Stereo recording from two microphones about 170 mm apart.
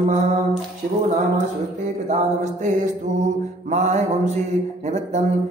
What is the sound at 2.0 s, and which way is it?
Mantra, 45° right (ahead or behind).